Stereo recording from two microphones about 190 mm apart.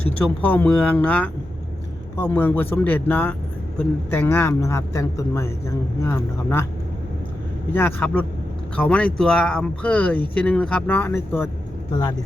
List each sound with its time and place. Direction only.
0.0 s speech: 10° left (ahead or behind)
7.7 s speech: 10° left (ahead or behind)